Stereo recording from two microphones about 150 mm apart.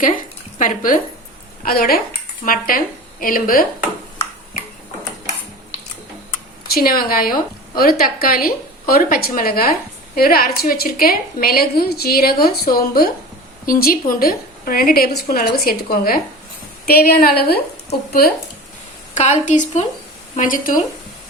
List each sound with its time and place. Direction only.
0.6 s speech: 60° left (ahead or behind)
1.6 s a woman's voice: 85° left
2.4 s a woman's voice: 70° left (ahead or behind)
6.7 s a woman's voice: 80° left
19.1 s speech: 50° left (ahead or behind)
20.3 s speech: 65° left (ahead or behind)